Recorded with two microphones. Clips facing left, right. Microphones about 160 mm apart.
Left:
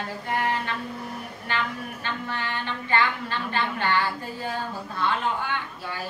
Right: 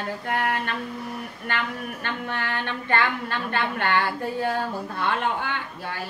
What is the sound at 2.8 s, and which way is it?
A woman's voice, 55° right (ahead or behind).